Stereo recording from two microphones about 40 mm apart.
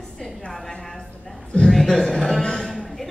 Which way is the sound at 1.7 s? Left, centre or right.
Centre.